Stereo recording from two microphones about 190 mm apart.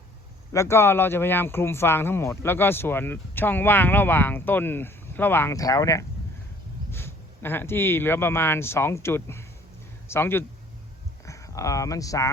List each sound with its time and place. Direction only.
0.5 s a man's voice: 15° left (ahead or behind)